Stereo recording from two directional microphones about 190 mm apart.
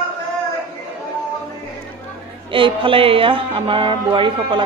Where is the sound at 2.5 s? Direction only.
25° right (ahead or behind).